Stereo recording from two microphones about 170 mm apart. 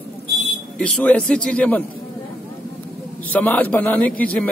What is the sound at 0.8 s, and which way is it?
A man's voice, 5° left (ahead or behind).